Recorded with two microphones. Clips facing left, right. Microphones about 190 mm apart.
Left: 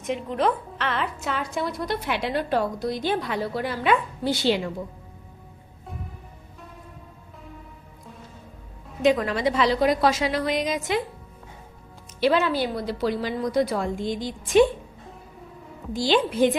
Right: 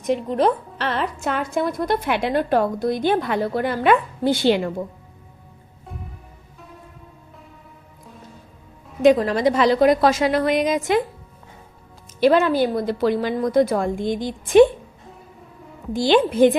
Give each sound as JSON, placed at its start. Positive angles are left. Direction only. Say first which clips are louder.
{"t": 0.0, "sound": "a woman's voice", "louder": "right 5 dB", "side_deg": -35}
{"t": 9.1, "sound": "a woman's voice", "louder": "right 5 dB", "side_deg": -40}
{"t": 12.2, "sound": "a woman's voice", "louder": "right 5 dB", "side_deg": -50}
{"t": 15.9, "sound": "a woman's voice", "louder": "right 5 dB", "side_deg": -55}